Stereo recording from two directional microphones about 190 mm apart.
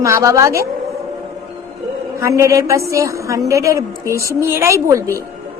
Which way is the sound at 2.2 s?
15° right (ahead or behind).